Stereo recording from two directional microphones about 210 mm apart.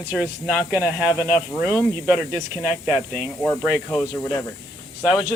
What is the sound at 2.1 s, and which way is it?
Speech, 5° right (ahead or behind).